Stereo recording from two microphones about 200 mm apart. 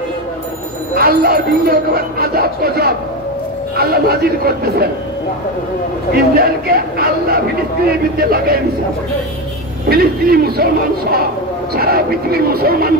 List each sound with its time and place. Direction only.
0.9 s a man's voice: 50° right (ahead or behind)
6.1 s a man's voice: 50° right (ahead or behind)
9.8 s a man's voice: 50° right (ahead or behind)